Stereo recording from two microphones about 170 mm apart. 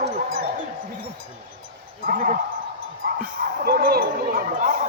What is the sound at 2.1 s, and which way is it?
Speech, 50° right (ahead or behind).